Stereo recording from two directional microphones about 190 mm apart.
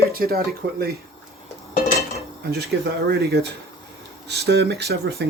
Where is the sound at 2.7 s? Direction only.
65° right (ahead or behind).